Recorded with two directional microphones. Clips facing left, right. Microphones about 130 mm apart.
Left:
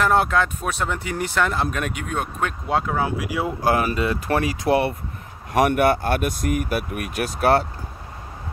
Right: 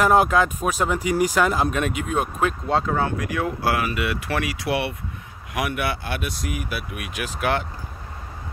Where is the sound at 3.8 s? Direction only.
30° left (ahead or behind).